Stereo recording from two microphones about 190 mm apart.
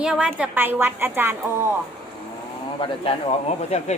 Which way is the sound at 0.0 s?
5° right (ahead or behind).